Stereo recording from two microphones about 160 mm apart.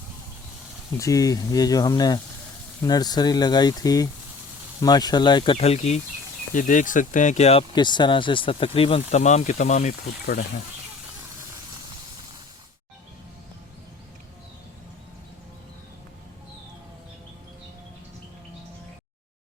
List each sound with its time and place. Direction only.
0.9 s speech: 20° left (ahead or behind); by 6.0 s 40° left (ahead or behind)
6.5 s speech: 55° left (ahead or behind)
7.7 s speech: 30° left (ahead or behind); by 9.9 s 45° left (ahead or behind)